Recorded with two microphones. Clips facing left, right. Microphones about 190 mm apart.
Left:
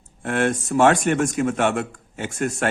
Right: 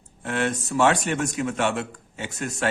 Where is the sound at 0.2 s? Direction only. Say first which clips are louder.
Left 4 dB; 50° left (ahead or behind).